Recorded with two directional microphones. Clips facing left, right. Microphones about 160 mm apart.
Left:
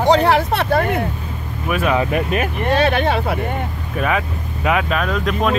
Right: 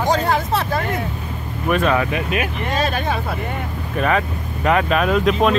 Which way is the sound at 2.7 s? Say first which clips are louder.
Left 6 dB; 70° left (ahead or behind).